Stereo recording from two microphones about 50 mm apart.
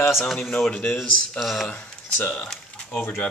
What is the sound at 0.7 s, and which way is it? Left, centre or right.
Speech, centre.